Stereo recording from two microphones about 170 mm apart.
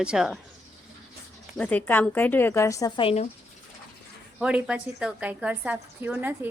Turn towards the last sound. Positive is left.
turn(degrees=-10)  # may be behind; listen again after turning